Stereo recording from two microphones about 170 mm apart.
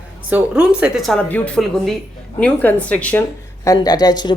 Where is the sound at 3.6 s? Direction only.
20° left (ahead or behind).